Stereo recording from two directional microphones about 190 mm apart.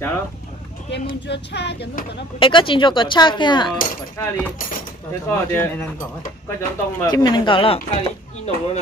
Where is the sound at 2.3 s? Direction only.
25° left (ahead or behind).